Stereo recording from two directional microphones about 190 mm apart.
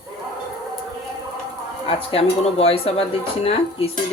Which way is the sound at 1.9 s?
30° left (ahead or behind).